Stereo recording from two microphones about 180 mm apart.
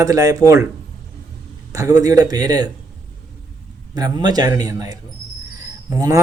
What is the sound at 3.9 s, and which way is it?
A man's voice, 20° right (ahead or behind).